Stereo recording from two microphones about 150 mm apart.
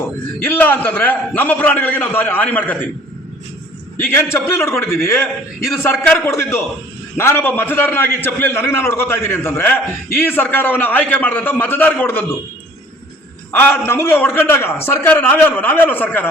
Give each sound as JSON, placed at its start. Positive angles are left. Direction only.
{"t": 0.3, "sound": "a man's voice", "side_deg": 10}
{"t": 3.9, "sound": "a man's voice", "side_deg": 15}
{"t": 13.6, "sound": "a man's voice", "side_deg": 10}